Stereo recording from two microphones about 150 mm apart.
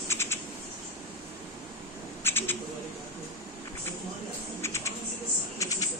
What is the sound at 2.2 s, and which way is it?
Bird, 15° left (ahead or behind).